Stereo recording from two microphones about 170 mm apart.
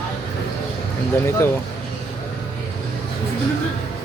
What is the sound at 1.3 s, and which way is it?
Speech, 15° left (ahead or behind).